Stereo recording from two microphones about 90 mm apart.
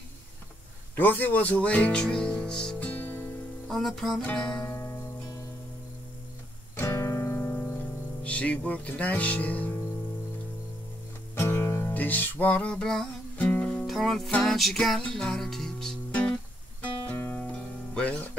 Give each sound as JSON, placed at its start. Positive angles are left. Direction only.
{"t": 0.9, "sound": "speech", "side_deg": 20}
{"t": 3.6, "sound": "music", "side_deg": 5}
{"t": 4.6, "sound": "music", "side_deg": 30}
{"t": 6.8, "sound": "music", "side_deg": 30}
{"t": 11.3, "sound": "music", "side_deg": 25}
{"t": 13.4, "sound": "music", "side_deg": 15}
{"t": 13.8, "sound": "music", "side_deg": 0}
{"t": 17.1, "sound": "music", "side_deg": 20}